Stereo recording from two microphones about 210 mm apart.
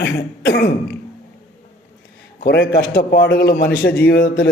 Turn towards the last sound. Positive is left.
turn(degrees=50)  # may be behind; listen again after turning